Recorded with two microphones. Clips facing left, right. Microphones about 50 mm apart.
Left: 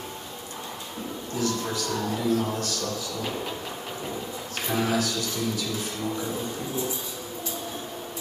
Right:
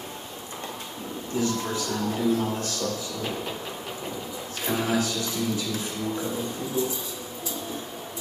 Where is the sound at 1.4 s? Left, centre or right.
Right.